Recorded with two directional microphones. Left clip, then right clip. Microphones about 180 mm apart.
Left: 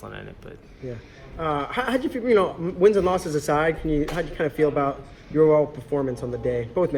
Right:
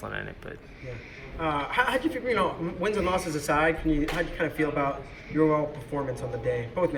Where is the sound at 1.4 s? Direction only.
50° left (ahead or behind).